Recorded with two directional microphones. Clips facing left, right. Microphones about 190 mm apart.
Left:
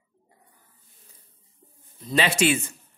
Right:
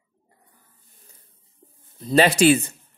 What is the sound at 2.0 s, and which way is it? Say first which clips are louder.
Speech: right 6 dB; 40° right (ahead or behind).